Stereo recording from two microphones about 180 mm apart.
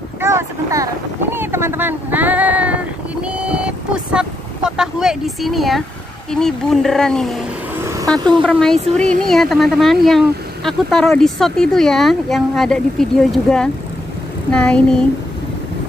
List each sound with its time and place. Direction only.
0.2 s speech: 15° right (ahead or behind); by 7.3 s 5° left (ahead or behind)
7.8 s vehicle: 15° right (ahead or behind)
8.4 s speech: 5° left (ahead or behind)